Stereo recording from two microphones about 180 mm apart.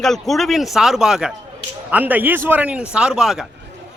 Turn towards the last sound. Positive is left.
turn(degrees=0)  # may be behind; listen again after turning